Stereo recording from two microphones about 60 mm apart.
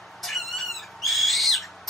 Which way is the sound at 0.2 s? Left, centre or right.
Centre.